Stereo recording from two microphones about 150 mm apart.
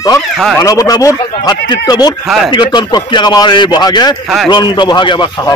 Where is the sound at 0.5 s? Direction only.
20° left (ahead or behind).